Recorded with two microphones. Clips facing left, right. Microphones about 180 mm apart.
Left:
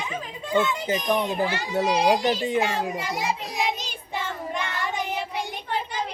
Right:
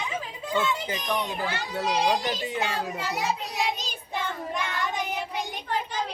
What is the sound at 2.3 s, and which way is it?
Speech, 25° left (ahead or behind).